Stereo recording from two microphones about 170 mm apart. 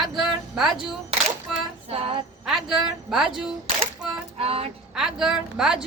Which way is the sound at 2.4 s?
Centre (ahead or behind).